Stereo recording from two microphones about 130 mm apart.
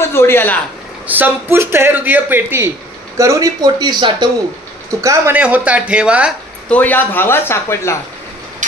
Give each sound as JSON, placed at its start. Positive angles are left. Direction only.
{"t": 0.1, "sound": "a sound", "side_deg": 15}
{"t": 1.0, "sound": "speech", "side_deg": -15}
{"t": 3.2, "sound": "speech", "side_deg": -25}
{"t": 5.0, "sound": "speech", "side_deg": -15}
{"t": 6.7, "sound": "speech", "side_deg": 15}